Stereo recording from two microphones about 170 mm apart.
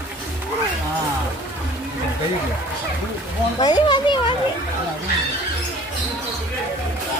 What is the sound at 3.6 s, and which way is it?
Speech, 25° left (ahead or behind).